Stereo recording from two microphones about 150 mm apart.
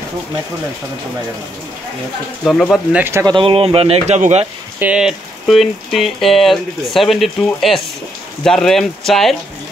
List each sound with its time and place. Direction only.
2.4 s speech: centre (ahead or behind)
3.0 s speech: 15° right (ahead or behind)
3.3 s speech: 40° right (ahead or behind)
4.7 s speech: 5° right (ahead or behind)